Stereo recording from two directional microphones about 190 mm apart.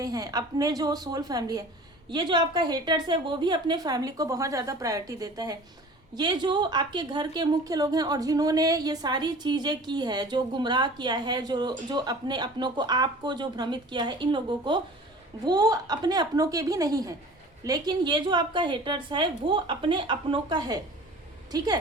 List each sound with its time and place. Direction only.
0.0 s a woman's voice: 20° right (ahead or behind)